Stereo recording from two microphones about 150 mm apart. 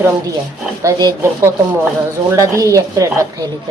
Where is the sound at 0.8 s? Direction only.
20° right (ahead or behind).